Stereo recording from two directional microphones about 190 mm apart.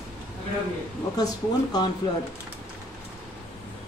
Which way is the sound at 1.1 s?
20° left (ahead or behind).